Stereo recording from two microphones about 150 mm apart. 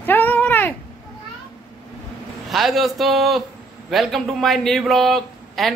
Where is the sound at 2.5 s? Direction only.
Centre (ahead or behind).